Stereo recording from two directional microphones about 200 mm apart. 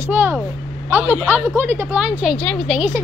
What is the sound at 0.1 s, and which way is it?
A woman's voice, 10° right (ahead or behind).